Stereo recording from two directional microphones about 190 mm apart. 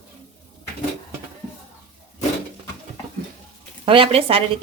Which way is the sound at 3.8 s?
30° right (ahead or behind).